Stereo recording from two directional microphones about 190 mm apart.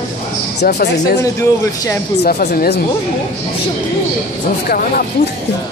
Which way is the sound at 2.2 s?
50° left (ahead or behind).